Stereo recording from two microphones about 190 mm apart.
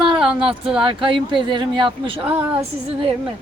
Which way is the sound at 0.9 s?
25° right (ahead or behind).